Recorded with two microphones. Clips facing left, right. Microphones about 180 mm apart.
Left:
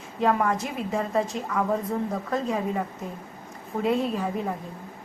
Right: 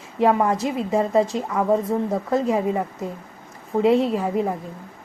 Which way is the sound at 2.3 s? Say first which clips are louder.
Right 6 dB; 25° right (ahead or behind).